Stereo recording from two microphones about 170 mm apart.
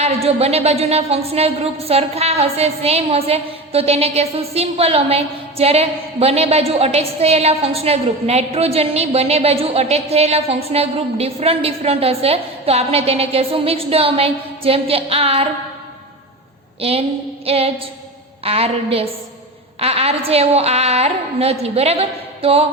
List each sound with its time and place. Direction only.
0.0 s a woman's voice: 35° right (ahead or behind)
17.4 s a woman's voice: 35° right (ahead or behind)